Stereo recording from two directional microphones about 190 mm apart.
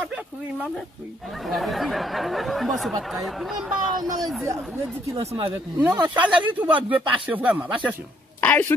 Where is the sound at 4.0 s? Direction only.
20° right (ahead or behind).